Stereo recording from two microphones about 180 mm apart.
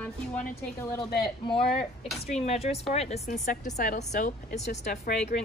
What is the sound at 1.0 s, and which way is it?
A woman's voice, 25° left (ahead or behind).